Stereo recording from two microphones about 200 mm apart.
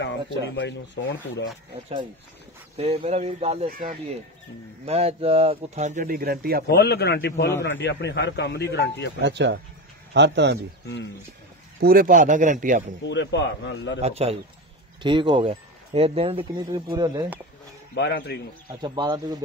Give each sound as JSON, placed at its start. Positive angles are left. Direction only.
{"t": 0.0, "sound": "speech", "side_deg": 60}
{"t": 2.8, "sound": "speech", "side_deg": -30}
{"t": 3.6, "sound": "speech", "side_deg": -45}
{"t": 4.8, "sound": "speech", "side_deg": -30}
{"t": 6.7, "sound": "speech", "side_deg": 55}
{"t": 9.2, "sound": "a man's voice", "side_deg": -60}
{"t": 11.8, "sound": "speech", "side_deg": -45}
{"t": 13.0, "sound": "speech", "side_deg": 60}
{"t": 14.0, "sound": "speech", "side_deg": -30}
{"t": 17.9, "sound": "speech", "side_deg": 55}
{"t": 18.7, "sound": "speech", "side_deg": -20}